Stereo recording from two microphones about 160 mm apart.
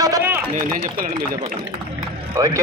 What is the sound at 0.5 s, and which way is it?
Speech, 55° right (ahead or behind).